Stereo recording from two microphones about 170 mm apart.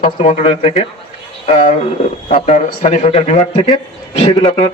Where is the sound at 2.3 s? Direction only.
45° left (ahead or behind).